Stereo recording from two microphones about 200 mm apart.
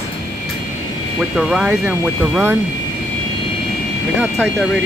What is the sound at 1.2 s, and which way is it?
Speech, centre (ahead or behind).